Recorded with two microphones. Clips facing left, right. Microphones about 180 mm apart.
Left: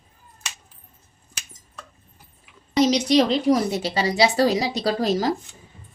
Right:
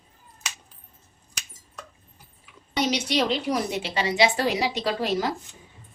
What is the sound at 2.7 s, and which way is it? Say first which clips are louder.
A woman's voice: left 7 dB; 35° left (ahead or behind).